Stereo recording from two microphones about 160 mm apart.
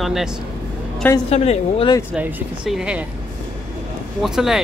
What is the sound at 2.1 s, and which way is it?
Speech, 5° right (ahead or behind).